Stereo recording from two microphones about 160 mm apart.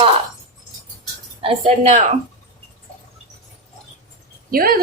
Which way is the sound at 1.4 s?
40° right (ahead or behind).